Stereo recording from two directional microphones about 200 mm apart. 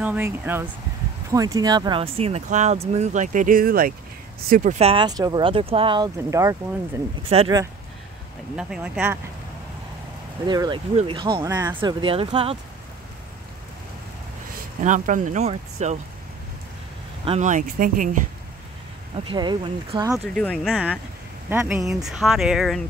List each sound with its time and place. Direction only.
0.0 s speech: 10° right (ahead or behind); by 6.0 s 25° right (ahead or behind)
6.1 s speech: 15° right (ahead or behind)
8.5 s speech: 5° right (ahead or behind)
10.4 s speech: 20° right (ahead or behind)
14.8 s speech: 40° right (ahead or behind)
17.2 s speech: 35° right (ahead or behind)
19.2 s speech: 25° right (ahead or behind)
20.3 s speech: 5° left (ahead or behind)